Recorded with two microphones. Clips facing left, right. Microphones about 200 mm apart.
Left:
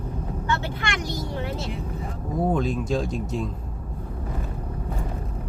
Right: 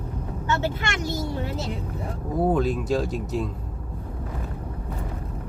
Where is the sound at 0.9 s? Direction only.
45° right (ahead or behind).